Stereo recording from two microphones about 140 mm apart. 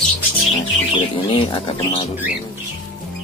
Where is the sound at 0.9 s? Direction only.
35° left (ahead or behind).